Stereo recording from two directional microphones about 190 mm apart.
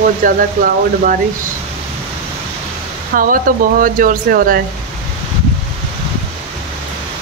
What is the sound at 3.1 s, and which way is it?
Speech, 50° right (ahead or behind).